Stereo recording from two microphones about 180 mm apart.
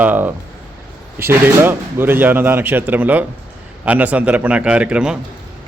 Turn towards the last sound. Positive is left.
turn(degrees=-5)  # may be behind; listen again after turning